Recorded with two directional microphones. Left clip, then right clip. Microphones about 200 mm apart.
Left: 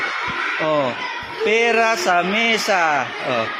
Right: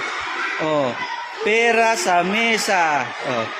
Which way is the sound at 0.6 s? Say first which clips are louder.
Even; 25° right (ahead or behind).